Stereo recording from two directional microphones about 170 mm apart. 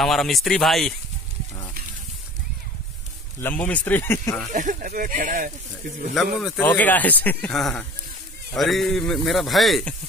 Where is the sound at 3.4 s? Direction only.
10° left (ahead or behind).